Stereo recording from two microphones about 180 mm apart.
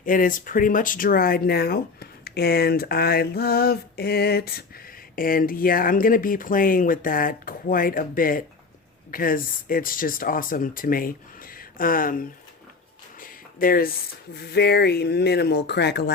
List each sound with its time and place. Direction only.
0.0 s speech: 50° left (ahead or behind)
13.1 s a sound: 50° left (ahead or behind)
14.3 s speech: 60° left (ahead or behind)